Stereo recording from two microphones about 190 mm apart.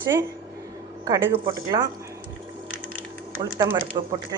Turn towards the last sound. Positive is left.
turn(degrees=-20)  # may be behind; listen again after turning